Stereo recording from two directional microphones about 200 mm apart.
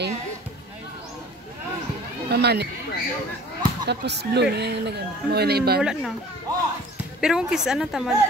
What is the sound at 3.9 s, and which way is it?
Speech, 55° right (ahead or behind).